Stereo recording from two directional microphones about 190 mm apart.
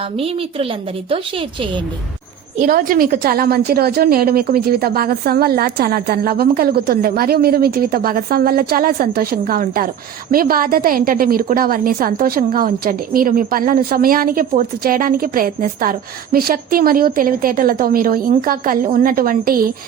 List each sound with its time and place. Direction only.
1.1 s a woman's voice: 30° right (ahead or behind)
2.6 s a woman's voice: 50° right (ahead or behind)